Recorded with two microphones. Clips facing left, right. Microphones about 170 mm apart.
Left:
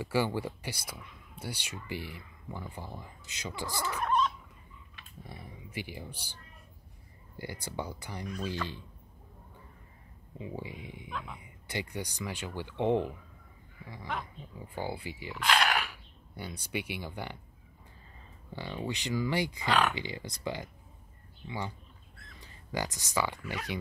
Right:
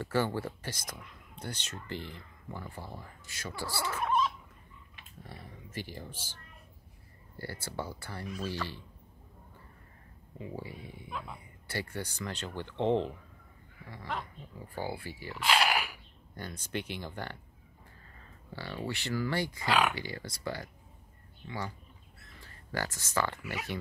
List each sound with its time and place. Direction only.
0.0 s speech: 10° left (ahead or behind)
4.0 s fowl: 5° right (ahead or behind)
5.2 s speech: 15° left (ahead or behind)
10.4 s speech: 15° left (ahead or behind)
11.1 s speech: 5° right (ahead or behind)
11.6 s speech: 15° left (ahead or behind)
14.6 s speech: 15° left (ahead or behind)
15.3 s a sound: centre (ahead or behind)
16.3 s speech: 10° left (ahead or behind)
18.5 s speech: 20° left (ahead or behind)
23.4 s speech: 10° right (ahead or behind)